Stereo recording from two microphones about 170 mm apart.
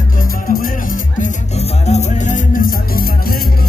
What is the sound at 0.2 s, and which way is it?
Music, 55° left (ahead or behind).